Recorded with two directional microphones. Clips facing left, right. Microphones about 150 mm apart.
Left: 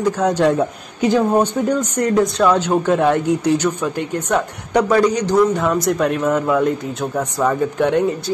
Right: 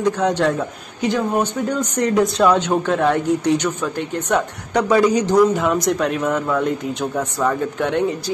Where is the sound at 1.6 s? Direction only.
25° left (ahead or behind).